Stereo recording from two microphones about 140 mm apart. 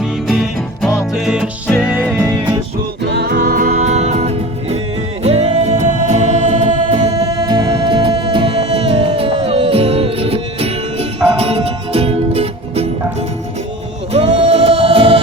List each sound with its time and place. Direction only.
0.0 s music: centre (ahead or behind)
3.4 s music: 90° right
3.8 s music: 55° right (ahead or behind)
7.1 s music: 25° right (ahead or behind); by 12.9 s 45° right (ahead or behind)
14.1 s music: 45° right (ahead or behind)